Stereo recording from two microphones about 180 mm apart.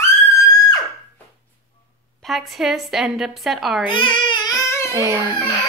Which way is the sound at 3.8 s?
25° left (ahead or behind).